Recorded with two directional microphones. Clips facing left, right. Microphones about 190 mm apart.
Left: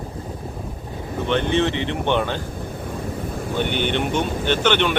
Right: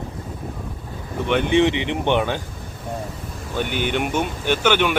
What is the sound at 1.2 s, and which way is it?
Speech, 15° right (ahead or behind).